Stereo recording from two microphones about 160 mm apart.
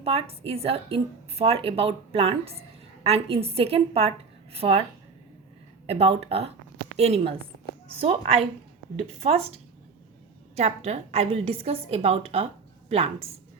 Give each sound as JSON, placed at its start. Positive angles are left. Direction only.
{"t": 0.0, "sound": "a woman's voice", "side_deg": -35}
{"t": 5.8, "sound": "a woman's voice", "side_deg": -40}
{"t": 10.5, "sound": "a woman's voice", "side_deg": -40}